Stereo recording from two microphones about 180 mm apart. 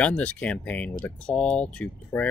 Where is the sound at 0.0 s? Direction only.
5° left (ahead or behind).